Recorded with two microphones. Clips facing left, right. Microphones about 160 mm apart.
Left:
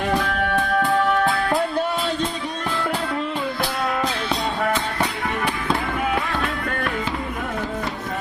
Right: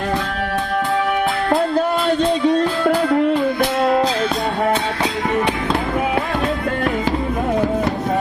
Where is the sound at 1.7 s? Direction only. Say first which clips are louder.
Right 6 dB; 50° right (ahead or behind); by 3.3 s 65° right (ahead or behind).